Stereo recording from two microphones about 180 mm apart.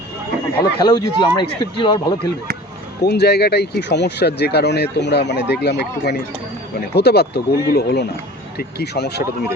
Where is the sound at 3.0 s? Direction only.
65° left (ahead or behind).